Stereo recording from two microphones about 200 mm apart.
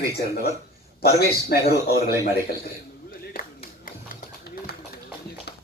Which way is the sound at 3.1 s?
45° left (ahead or behind).